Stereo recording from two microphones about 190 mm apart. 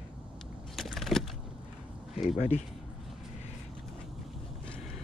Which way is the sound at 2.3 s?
35° left (ahead or behind).